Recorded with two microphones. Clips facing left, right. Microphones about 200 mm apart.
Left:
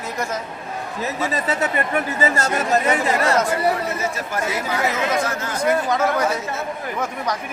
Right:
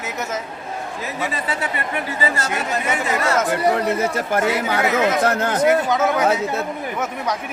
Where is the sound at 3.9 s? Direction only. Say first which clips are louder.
Right 5 dB; 60° right (ahead or behind).